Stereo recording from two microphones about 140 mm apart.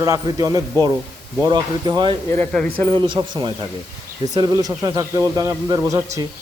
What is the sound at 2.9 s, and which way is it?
Speech, 35° right (ahead or behind).